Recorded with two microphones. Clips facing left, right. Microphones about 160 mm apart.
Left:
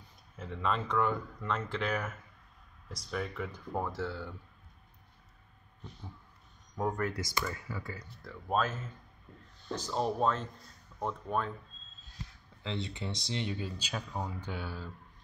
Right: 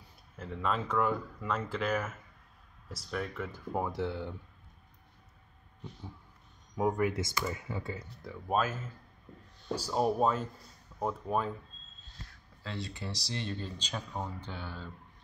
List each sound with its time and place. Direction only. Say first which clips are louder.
0.4 s speech: even; centre (ahead or behind); by 4.4 s 20° right (ahead or behind)
6.8 s speech: right 4 dB; 10° right (ahead or behind)
7.2 s speech: right 2 dB; 20° right (ahead or behind)
8.5 s speech: right 1 dB; 5° right (ahead or behind)
12.6 s speech: left 2 dB; 20° left (ahead or behind)